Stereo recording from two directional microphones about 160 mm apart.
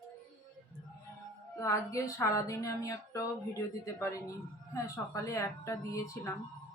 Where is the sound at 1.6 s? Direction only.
20° left (ahead or behind).